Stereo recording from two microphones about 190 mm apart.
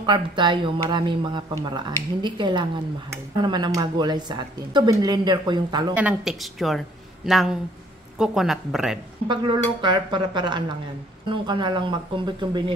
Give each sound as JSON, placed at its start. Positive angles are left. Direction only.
{"t": 0.0, "sound": "speech", "side_deg": -25}
{"t": 5.9, "sound": "speech", "side_deg": -5}
{"t": 9.3, "sound": "speech", "side_deg": -25}